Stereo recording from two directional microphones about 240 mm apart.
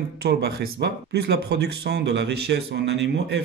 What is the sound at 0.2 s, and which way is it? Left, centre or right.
Speech, right.